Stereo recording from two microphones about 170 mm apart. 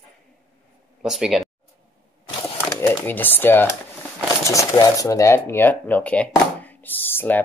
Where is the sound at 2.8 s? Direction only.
10° left (ahead or behind).